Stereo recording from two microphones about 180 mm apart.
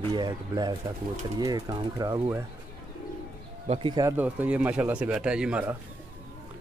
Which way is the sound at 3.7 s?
25° right (ahead or behind).